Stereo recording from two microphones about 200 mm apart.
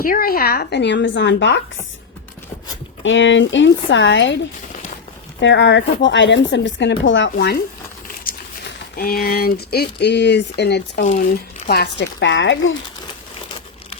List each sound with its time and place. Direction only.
0.0 s speech: 45° left (ahead or behind); by 1.6 s 65° left (ahead or behind)
3.0 s speech: 70° left (ahead or behind)
5.4 s speech: 65° left (ahead or behind)
11.0 s speech: 35° left (ahead or behind)
11.7 s speech: 55° left (ahead or behind)